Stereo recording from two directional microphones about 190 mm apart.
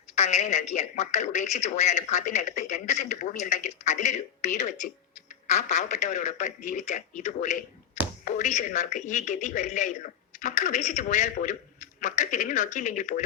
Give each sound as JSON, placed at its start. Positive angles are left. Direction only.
{"t": 0.2, "sound": "a man's voice", "side_deg": 35}